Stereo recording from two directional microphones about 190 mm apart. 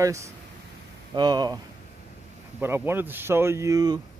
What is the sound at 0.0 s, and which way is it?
Speech, 15° right (ahead or behind).